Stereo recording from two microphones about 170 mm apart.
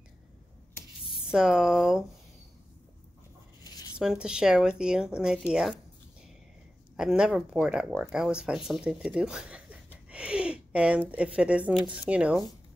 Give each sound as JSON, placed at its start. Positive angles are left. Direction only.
{"t": 1.2, "sound": "speech", "side_deg": -5}
{"t": 3.6, "sound": "writing", "side_deg": 25}
{"t": 4.0, "sound": "speech", "side_deg": -5}
{"t": 7.0, "sound": "speech", "side_deg": -5}
{"t": 10.0, "sound": "a sound", "side_deg": -5}
{"t": 12.0, "sound": "speech", "side_deg": -5}